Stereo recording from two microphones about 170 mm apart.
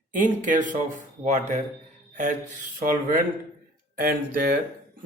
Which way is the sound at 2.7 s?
50° right (ahead or behind).